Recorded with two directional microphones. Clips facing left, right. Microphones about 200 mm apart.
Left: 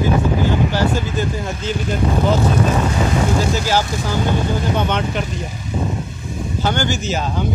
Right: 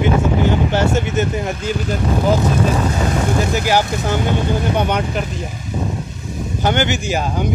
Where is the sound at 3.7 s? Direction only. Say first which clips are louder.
Right 2 dB; 15° right (ahead or behind).